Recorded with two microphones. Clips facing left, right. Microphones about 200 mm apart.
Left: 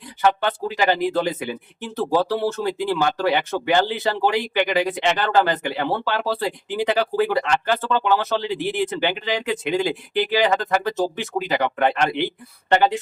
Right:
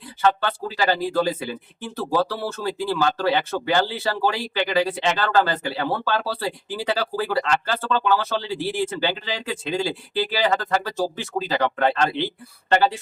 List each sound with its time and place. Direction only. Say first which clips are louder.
0.2 s speech: left 1 dB; 15° left (ahead or behind)